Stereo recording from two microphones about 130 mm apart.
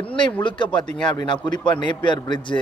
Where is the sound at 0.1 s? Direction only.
40° left (ahead or behind).